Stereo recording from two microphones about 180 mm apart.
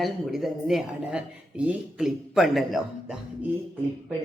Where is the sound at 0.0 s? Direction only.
Centre (ahead or behind).